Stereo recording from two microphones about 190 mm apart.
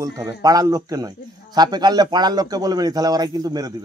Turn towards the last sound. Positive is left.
turn(degrees=-20)  # may be behind; listen again after turning